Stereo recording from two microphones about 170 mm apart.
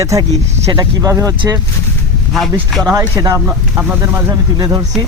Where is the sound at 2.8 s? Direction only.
20° right (ahead or behind).